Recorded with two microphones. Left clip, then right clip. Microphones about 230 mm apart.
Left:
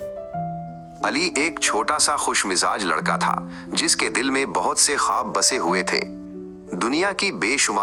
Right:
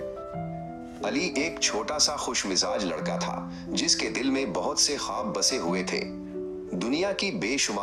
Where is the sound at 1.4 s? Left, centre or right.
Left.